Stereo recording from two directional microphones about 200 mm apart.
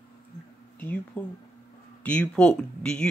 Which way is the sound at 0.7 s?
10° left (ahead or behind).